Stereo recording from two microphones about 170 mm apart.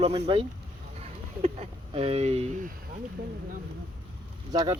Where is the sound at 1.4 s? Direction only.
35° right (ahead or behind).